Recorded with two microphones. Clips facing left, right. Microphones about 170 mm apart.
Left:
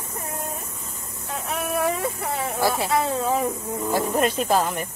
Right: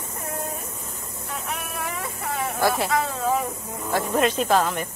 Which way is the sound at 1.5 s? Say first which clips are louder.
Left 10 dB; 25° left (ahead or behind).